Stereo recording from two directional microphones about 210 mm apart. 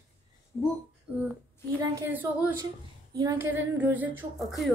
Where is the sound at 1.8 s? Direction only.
10° right (ahead or behind).